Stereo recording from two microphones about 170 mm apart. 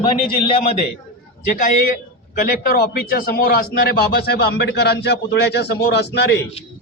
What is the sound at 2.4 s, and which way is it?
A man's voice, 60° left (ahead or behind).